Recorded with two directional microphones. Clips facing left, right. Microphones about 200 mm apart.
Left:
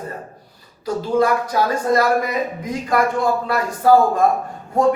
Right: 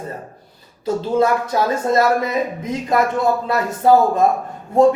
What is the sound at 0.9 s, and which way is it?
Speech, 25° right (ahead or behind).